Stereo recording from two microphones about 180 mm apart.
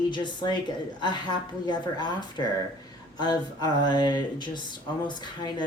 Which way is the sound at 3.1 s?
20° left (ahead or behind).